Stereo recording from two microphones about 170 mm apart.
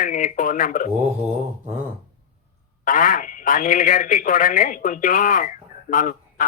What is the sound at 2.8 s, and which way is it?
Speech, 50° left (ahead or behind).